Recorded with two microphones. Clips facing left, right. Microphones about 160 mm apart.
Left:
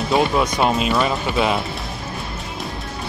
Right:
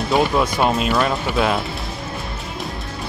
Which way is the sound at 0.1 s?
Centre (ahead or behind).